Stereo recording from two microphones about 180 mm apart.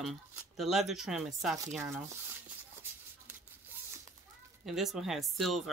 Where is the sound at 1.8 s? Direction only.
15° right (ahead or behind).